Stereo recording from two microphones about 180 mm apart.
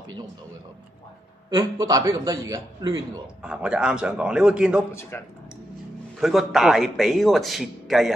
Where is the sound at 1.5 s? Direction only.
20° right (ahead or behind).